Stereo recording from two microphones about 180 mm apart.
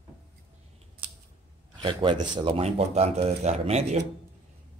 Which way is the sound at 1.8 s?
25° right (ahead or behind).